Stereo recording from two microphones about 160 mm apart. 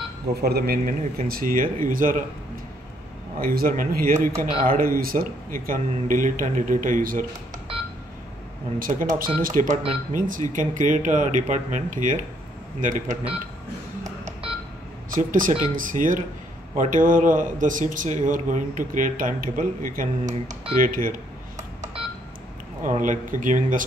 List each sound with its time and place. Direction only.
0.4 s speech: 75° right (ahead or behind)
1.2 s a man's voice: 65° right (ahead or behind)
3.3 s a man's voice: 65° right (ahead or behind)
8.7 s a man's voice: 60° right (ahead or behind)
14.2 s telephone dialing: 35° right (ahead or behind)
15.0 s a man's voice: 60° right (ahead or behind)
21.5 s telephone dialing: 50° right (ahead or behind)
22.8 s speech: 55° right (ahead or behind)